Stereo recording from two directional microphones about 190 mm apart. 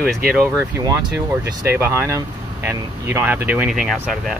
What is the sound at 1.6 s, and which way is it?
Speech, 10° right (ahead or behind).